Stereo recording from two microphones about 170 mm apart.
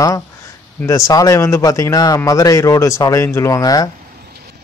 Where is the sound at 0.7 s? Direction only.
20° left (ahead or behind).